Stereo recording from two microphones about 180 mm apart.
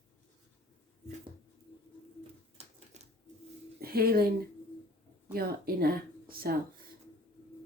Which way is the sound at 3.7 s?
60° right (ahead or behind).